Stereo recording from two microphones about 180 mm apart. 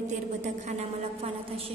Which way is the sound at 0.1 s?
40° right (ahead or behind).